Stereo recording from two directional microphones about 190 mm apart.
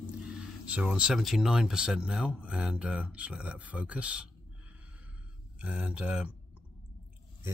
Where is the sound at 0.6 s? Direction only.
5° right (ahead or behind).